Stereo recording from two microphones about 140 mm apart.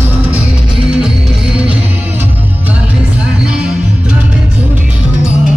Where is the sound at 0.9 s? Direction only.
5° right (ahead or behind).